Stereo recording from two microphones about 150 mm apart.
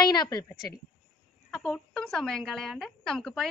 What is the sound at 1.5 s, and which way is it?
A woman's voice, 5° left (ahead or behind).